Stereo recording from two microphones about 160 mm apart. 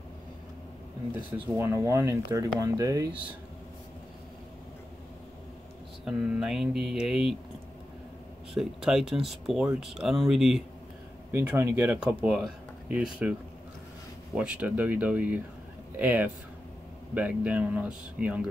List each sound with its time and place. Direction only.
1.5 s speech: 15° right (ahead or behind)
6.0 s speech: 5° right (ahead or behind)
8.5 s speech: 5° right (ahead or behind)
11.3 s speech: 15° right (ahead or behind)